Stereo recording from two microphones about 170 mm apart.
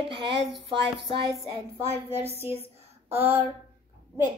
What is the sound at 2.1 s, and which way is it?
Speech, 40° right (ahead or behind).